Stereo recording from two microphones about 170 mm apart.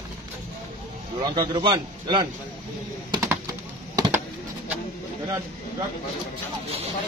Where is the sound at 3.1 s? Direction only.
20° right (ahead or behind).